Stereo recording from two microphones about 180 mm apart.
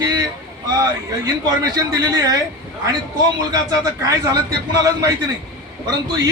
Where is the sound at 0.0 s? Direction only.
20° right (ahead or behind).